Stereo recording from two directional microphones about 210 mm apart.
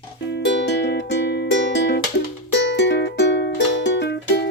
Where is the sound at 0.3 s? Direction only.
55° left (ahead or behind).